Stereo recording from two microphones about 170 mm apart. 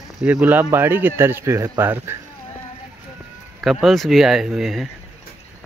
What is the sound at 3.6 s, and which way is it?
Speech, centre (ahead or behind).